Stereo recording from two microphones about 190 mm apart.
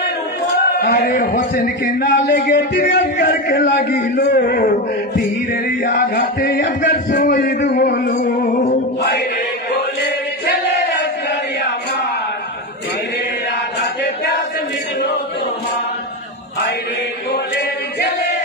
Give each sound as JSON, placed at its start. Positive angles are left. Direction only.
{"t": 0.7, "sound": "a man's voice", "side_deg": 50}
{"t": 8.2, "sound": "a man's voice", "side_deg": 40}